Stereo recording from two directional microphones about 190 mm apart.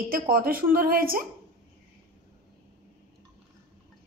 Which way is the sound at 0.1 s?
50° right (ahead or behind).